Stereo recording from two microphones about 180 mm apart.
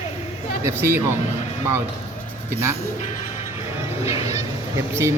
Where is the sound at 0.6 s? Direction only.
15° right (ahead or behind).